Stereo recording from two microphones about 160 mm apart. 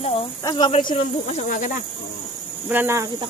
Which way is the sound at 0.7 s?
40° left (ahead or behind).